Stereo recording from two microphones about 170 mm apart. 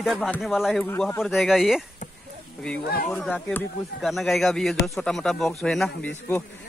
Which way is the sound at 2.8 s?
60° left (ahead or behind).